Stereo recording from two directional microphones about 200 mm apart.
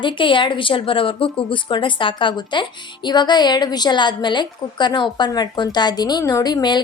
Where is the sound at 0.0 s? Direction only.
25° left (ahead or behind).